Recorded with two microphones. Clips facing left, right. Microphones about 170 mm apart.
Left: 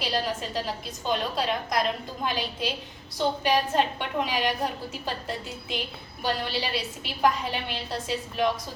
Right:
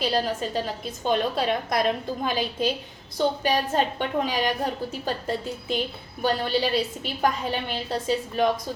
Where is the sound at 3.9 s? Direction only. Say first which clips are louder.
Right 3 dB; 45° right (ahead or behind).